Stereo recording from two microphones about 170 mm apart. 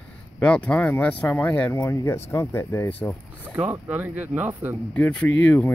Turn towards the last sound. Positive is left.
turn(degrees=10)  # may be behind; listen again after turning